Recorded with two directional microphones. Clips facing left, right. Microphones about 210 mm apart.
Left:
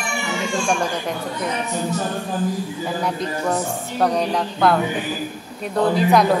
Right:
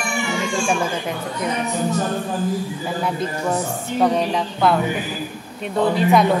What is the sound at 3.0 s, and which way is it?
Speech, centre (ahead or behind).